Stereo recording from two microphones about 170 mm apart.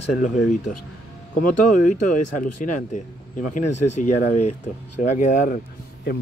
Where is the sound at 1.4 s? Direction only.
50° left (ahead or behind).